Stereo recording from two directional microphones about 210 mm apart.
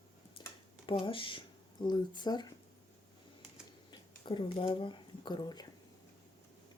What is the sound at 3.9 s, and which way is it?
Speech, 20° left (ahead or behind).